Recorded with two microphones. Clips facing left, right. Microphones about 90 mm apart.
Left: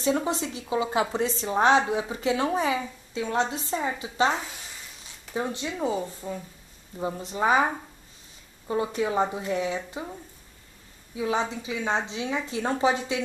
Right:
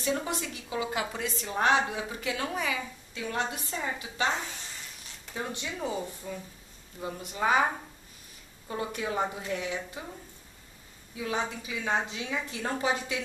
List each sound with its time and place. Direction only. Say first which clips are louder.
0.0 s a woman's voice: left 5 dB; 25° left (ahead or behind)
4.3 s speech: left 3 dB; 5° left (ahead or behind)
5.3 s a woman's voice: left 6 dB; 25° left (ahead or behind)
8.6 s a woman's voice: left 7 dB; 25° left (ahead or behind)
11.1 s a woman's voice: left 5 dB; 25° left (ahead or behind)